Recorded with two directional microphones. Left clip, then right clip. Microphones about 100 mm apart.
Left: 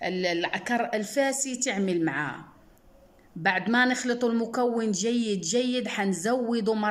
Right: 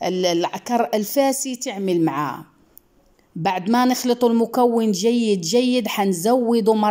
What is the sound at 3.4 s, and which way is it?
A woman's voice, 30° right (ahead or behind).